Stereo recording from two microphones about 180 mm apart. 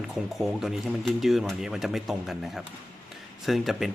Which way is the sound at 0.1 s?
Centre (ahead or behind).